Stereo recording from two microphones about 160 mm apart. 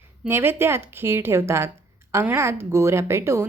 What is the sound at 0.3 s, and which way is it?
A woman's voice, 15° right (ahead or behind).